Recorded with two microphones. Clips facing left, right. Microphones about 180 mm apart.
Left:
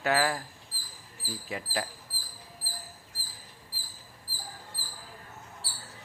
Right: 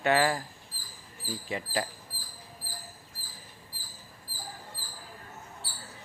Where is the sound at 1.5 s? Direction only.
Centre (ahead or behind).